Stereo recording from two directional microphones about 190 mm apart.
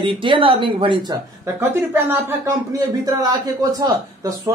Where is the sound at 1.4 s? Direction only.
15° right (ahead or behind).